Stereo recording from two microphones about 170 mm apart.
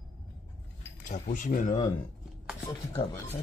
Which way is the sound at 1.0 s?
45° left (ahead or behind).